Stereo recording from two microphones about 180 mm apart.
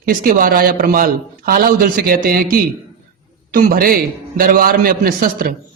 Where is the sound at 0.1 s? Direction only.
50° right (ahead or behind).